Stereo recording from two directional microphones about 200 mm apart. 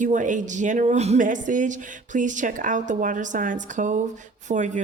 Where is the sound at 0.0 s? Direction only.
40° right (ahead or behind).